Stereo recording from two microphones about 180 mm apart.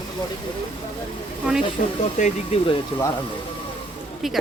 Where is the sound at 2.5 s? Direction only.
35° left (ahead or behind).